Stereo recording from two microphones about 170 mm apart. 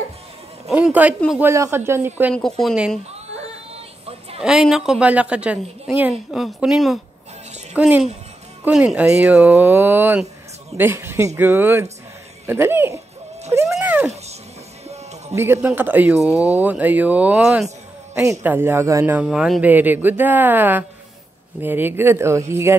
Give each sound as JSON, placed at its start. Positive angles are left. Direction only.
{"t": 0.7, "sound": "a man's voice", "side_deg": -5}
{"t": 2.3, "sound": "a woman's voice", "side_deg": 5}
{"t": 4.4, "sound": "a woman's voice", "side_deg": -5}
{"t": 12.4, "sound": "a sound", "side_deg": -15}
{"t": 15.3, "sound": "speech", "side_deg": -15}